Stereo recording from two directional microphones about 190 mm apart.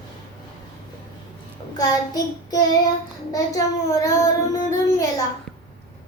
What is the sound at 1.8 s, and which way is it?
Child singing, 20° left (ahead or behind).